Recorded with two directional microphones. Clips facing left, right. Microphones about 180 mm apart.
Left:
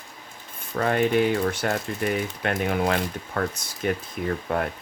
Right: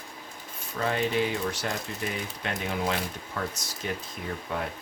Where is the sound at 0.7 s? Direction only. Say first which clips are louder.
Left 6 dB; 55° left (ahead or behind).